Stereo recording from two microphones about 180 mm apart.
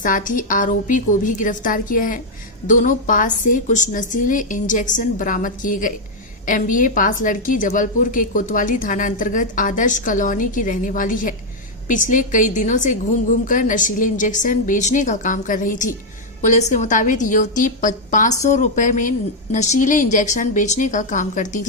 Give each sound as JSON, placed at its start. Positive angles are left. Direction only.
{"t": 0.0, "sound": "a woman's voice", "side_deg": 45}